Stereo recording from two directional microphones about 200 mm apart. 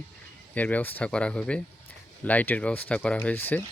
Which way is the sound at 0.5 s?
10° left (ahead or behind).